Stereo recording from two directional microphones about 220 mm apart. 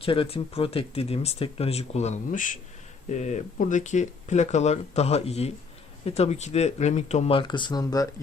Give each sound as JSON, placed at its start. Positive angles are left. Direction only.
{"t": 0.0, "sound": "speech", "side_deg": 25}